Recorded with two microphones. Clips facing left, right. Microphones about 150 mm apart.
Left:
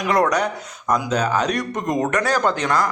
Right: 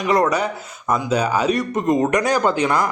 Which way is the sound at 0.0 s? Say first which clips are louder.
Right 1 dB; centre (ahead or behind).